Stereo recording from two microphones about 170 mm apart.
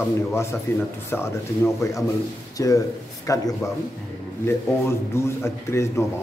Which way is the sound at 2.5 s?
20° left (ahead or behind).